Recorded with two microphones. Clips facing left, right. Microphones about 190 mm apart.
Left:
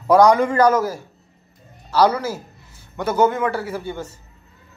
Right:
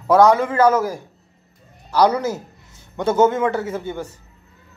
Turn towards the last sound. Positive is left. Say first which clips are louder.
# right 2 dB
turn(degrees=-20)  # may be behind; listen again after turning